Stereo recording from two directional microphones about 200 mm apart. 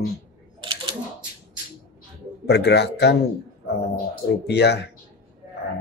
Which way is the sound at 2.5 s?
55° left (ahead or behind).